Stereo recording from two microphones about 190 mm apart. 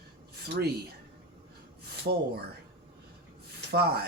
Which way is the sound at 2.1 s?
50° right (ahead or behind).